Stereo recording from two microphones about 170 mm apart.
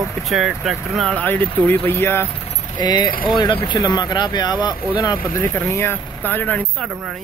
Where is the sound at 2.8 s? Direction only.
25° left (ahead or behind).